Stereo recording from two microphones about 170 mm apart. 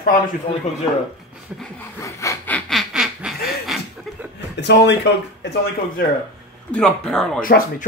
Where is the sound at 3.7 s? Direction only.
Centre (ahead or behind).